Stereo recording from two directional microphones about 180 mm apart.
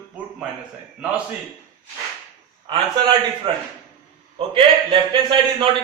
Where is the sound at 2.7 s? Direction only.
25° right (ahead or behind).